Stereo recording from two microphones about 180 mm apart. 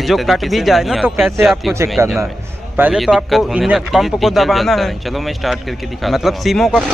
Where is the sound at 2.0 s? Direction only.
15° right (ahead or behind).